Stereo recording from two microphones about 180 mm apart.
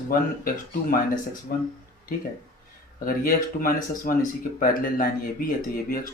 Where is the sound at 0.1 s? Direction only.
50° left (ahead or behind).